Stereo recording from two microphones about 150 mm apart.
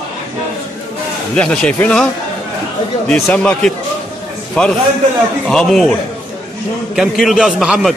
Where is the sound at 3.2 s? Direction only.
5° left (ahead or behind).